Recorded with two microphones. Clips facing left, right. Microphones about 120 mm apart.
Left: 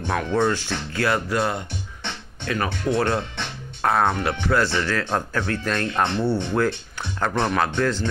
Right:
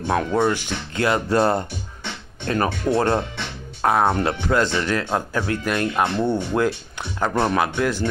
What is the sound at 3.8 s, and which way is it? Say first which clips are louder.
Speech: right 2 dB; 15° right (ahead or behind).